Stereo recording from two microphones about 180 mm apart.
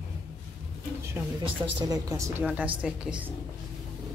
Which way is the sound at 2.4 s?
5° right (ahead or behind).